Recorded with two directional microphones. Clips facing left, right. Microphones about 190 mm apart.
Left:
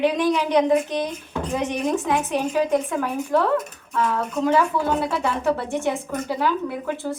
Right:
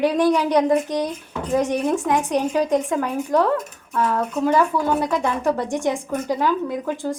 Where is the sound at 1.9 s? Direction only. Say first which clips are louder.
Right 2 dB; 15° right (ahead or behind).